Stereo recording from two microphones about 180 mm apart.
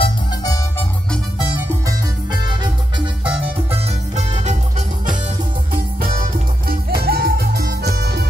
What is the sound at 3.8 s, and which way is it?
Music, 40° right (ahead or behind).